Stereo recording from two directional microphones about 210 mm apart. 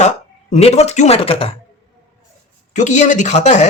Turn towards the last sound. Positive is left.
turn(degrees=35)  # may be behind; listen again after turning